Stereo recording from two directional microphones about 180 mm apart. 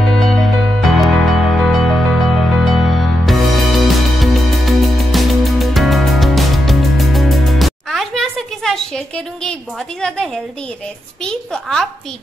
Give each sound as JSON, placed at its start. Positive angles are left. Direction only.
{"t": 0.1, "sound": "music", "side_deg": 0}
{"t": 10.0, "sound": "a woman's voice", "side_deg": 5}